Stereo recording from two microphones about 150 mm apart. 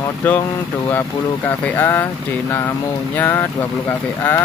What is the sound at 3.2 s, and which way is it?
Speech, 15° left (ahead or behind).